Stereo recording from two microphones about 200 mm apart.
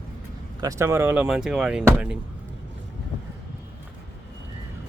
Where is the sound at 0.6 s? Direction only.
15° right (ahead or behind).